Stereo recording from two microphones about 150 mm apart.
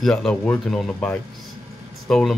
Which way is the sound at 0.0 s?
5° left (ahead or behind).